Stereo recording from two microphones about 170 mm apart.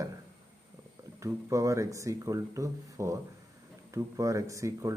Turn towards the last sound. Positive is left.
turn(degrees=-20)  # may be behind; listen again after turning